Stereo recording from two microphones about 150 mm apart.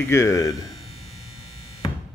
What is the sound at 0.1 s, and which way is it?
Speech, 20° left (ahead or behind).